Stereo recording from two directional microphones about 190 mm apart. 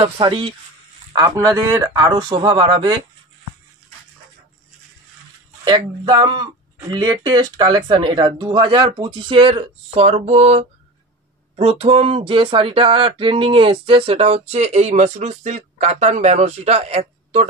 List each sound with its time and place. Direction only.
0.0 s speech: 30° right (ahead or behind)
2.0 s speech: 30° right (ahead or behind)
5.7 s speech: 20° right (ahead or behind)